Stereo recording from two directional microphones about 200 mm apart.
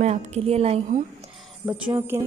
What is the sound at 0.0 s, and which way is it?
A woman's voice, 35° right (ahead or behind).